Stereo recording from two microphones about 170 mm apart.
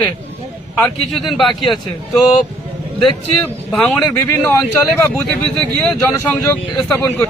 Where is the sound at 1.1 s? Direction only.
Centre (ahead or behind).